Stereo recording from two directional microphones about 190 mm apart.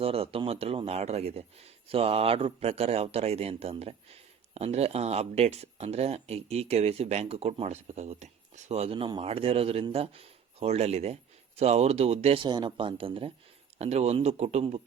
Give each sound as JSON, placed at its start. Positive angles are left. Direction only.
{"t": 0.0, "sound": "a man's voice", "side_deg": -30}